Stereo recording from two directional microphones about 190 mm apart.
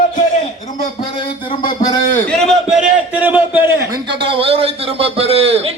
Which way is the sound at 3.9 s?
20° right (ahead or behind).